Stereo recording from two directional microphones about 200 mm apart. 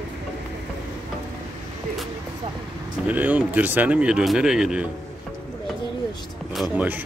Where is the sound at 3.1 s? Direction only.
10° right (ahead or behind).